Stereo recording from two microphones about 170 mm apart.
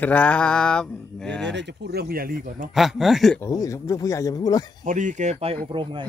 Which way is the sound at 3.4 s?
20° left (ahead or behind).